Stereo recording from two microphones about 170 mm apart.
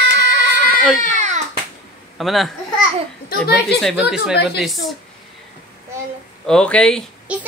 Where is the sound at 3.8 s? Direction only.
Centre (ahead or behind).